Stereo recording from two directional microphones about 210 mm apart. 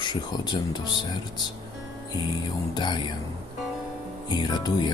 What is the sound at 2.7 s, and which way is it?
Speech, 20° left (ahead or behind).